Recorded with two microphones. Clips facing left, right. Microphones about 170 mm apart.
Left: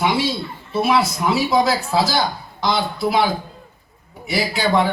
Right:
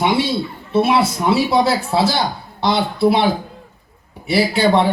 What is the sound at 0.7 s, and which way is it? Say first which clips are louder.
A man's voice: right 3 dB; 25° right (ahead or behind).